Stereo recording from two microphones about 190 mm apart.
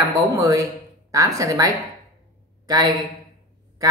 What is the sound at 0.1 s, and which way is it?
A man's voice, 20° right (ahead or behind).